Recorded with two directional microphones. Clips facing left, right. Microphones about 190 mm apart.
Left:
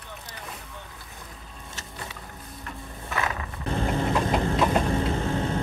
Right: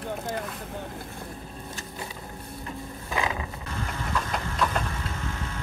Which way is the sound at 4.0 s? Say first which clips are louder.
Left 5 dB; 35° left (ahead or behind).